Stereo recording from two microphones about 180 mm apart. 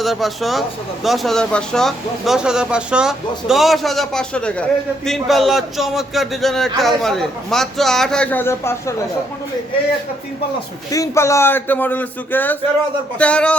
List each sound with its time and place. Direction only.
0.0 s a man's voice: centre (ahead or behind)
10.9 s speech: 15° left (ahead or behind)